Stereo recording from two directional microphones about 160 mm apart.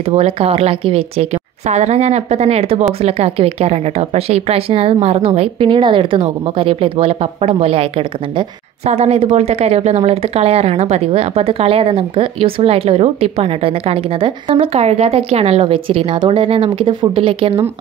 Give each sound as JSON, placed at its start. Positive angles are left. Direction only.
{"t": 0.1, "sound": "a woman's voice", "side_deg": -40}